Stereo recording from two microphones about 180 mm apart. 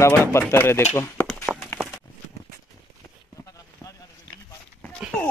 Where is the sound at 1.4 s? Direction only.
Centre (ahead or behind).